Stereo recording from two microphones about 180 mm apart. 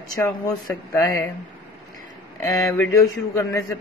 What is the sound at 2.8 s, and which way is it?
Speech, 15° left (ahead or behind).